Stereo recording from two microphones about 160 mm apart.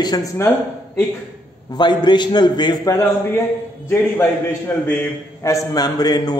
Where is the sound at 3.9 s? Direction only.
15° left (ahead or behind).